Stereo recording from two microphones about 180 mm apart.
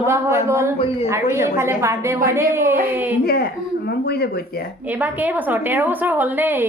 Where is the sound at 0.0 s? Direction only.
15° right (ahead or behind).